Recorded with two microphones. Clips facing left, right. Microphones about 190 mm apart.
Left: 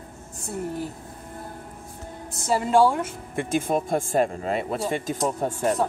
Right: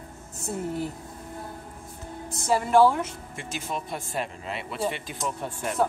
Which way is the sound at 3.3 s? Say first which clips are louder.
Left 10 dB; 50° left (ahead or behind).